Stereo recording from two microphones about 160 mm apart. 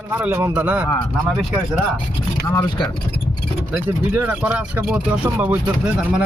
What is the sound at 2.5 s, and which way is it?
Speech, 25° left (ahead or behind).